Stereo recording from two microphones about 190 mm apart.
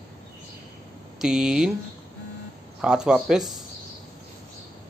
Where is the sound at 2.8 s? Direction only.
5° right (ahead or behind).